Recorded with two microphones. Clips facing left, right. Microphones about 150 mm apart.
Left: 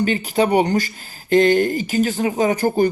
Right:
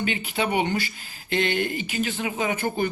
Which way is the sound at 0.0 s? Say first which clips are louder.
Left 8 dB; 40° left (ahead or behind).